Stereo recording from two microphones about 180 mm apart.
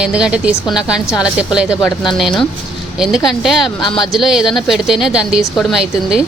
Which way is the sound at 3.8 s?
25° left (ahead or behind).